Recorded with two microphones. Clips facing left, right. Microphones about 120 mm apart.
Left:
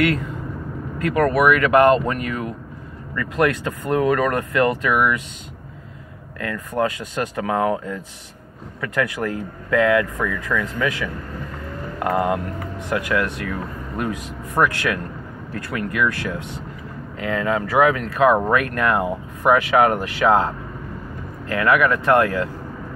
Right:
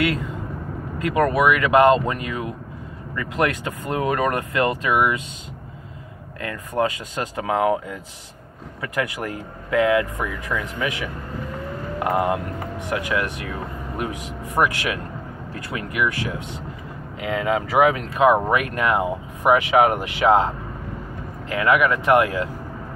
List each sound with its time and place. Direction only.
0.9 s speech: 20° right (ahead or behind)
6.4 s speech: 20° right (ahead or behind)